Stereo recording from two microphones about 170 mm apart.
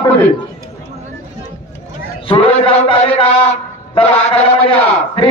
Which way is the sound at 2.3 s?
30° left (ahead or behind).